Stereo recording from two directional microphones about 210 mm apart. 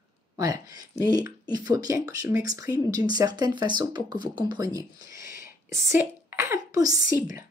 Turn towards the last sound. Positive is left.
turn(degrees=-15)  # may be behind; listen again after turning